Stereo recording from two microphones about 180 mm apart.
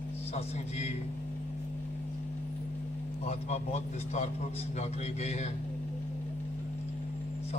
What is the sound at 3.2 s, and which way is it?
A man's voice, 35° left (ahead or behind).